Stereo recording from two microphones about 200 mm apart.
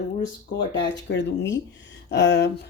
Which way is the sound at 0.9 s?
60° left (ahead or behind).